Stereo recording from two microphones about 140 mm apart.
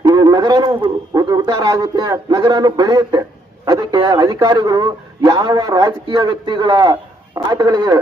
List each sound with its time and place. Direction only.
0.0 s a man's voice: 25° right (ahead or behind)